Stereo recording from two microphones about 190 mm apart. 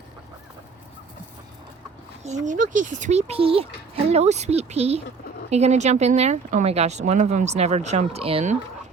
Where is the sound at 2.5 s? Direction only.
40° right (ahead or behind).